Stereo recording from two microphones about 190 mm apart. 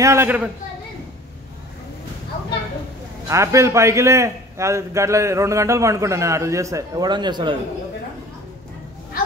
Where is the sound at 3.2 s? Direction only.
15° right (ahead or behind).